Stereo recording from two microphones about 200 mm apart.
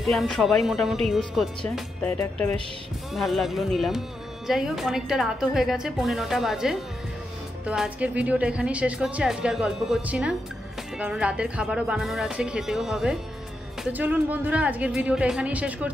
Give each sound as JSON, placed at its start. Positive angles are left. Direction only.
{"t": 0.0, "sound": "speech", "side_deg": 0}
{"t": 2.0, "sound": "speech", "side_deg": 10}
{"t": 3.1, "sound": "speech", "side_deg": 0}